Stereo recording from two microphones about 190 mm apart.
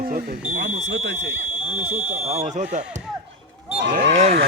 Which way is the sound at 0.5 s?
65° right (ahead or behind).